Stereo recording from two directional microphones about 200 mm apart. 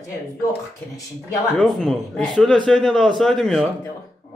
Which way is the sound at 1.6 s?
Centre (ahead or behind).